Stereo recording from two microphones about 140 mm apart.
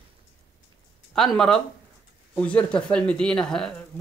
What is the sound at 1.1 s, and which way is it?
Speech, 5° left (ahead or behind).